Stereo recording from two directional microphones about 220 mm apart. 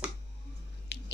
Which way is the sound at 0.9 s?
50° left (ahead or behind).